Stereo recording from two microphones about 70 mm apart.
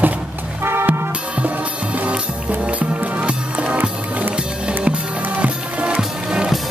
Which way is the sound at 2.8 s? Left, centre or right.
Centre.